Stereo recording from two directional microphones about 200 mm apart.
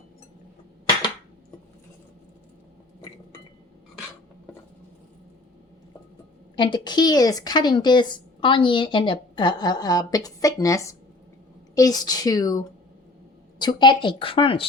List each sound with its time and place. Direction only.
6.6 s a woman's voice: 20° left (ahead or behind)